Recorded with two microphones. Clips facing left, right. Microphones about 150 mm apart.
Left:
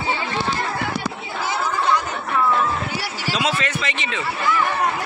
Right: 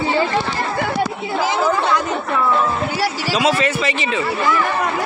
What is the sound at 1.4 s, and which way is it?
Chatter, 90° right.